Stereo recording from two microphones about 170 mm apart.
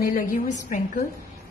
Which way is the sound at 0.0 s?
55° left (ahead or behind).